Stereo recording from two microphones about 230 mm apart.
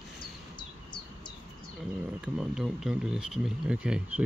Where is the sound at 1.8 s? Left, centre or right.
Centre.